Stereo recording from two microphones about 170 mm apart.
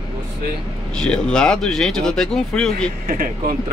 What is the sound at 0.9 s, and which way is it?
Speech, 5° left (ahead or behind).